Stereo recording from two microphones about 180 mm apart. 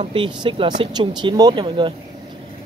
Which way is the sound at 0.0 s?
30° right (ahead or behind).